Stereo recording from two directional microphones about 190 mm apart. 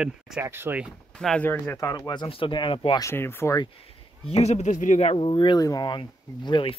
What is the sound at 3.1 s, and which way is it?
Speech, 10° left (ahead or behind).